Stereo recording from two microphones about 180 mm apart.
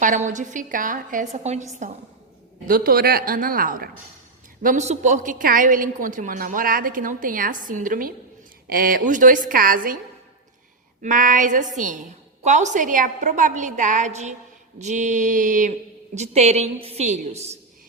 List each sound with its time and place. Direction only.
0.0 s a woman's voice: 45° right (ahead or behind)
2.6 s a woman's voice: 55° right (ahead or behind)
11.0 s a woman's voice: 50° right (ahead or behind)